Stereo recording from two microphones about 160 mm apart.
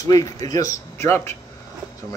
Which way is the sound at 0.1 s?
25° left (ahead or behind).